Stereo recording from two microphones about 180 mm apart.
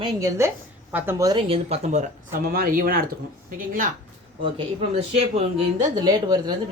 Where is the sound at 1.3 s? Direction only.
30° right (ahead or behind); by 3.9 s 50° right (ahead or behind).